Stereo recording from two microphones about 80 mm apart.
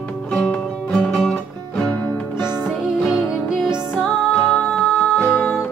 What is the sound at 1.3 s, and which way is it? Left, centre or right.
Music, centre.